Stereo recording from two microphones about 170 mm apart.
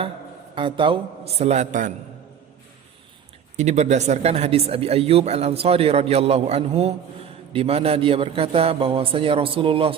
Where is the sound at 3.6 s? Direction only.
40° right (ahead or behind).